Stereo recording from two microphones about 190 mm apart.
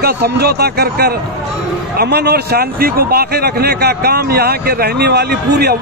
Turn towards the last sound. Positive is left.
turn(degrees=-55)  # may be behind; listen again after turning